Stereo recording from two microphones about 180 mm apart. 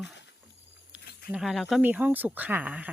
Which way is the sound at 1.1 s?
55° left (ahead or behind).